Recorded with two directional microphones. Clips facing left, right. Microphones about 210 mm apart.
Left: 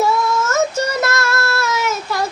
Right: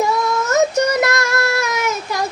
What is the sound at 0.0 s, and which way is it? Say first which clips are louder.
Child singing: left 1 dB; 15° right (ahead or behind).